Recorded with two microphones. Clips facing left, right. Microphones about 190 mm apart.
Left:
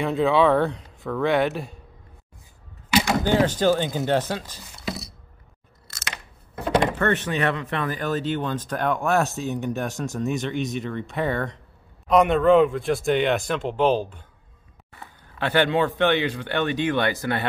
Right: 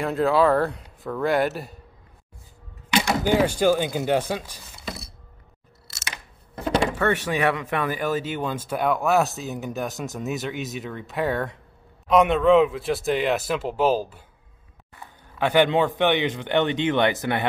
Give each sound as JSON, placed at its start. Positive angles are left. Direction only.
{"t": 0.0, "sound": "speech", "side_deg": 0}
{"t": 3.3, "sound": "speech", "side_deg": -10}
{"t": 7.0, "sound": "speech", "side_deg": -10}
{"t": 15.3, "sound": "speech", "side_deg": -15}